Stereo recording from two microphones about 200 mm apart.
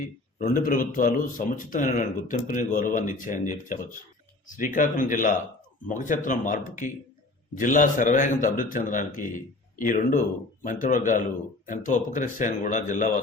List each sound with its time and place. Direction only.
0.0 s speech: 45° left (ahead or behind)